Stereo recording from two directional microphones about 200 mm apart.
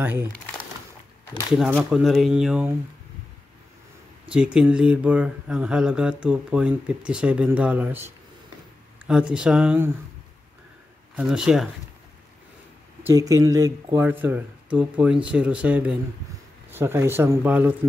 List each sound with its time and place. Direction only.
0.0 s speech: 10° right (ahead or behind)
1.6 s speech: 5° right (ahead or behind)
4.3 s speech: 5° right (ahead or behind)
11.1 s speech: 5° right (ahead or behind)
13.0 s speech: 15° right (ahead or behind)